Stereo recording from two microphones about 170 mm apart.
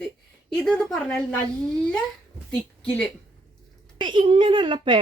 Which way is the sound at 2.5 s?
5° left (ahead or behind).